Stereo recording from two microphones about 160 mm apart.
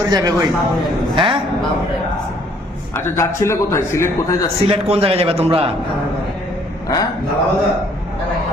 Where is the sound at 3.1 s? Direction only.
15° left (ahead or behind).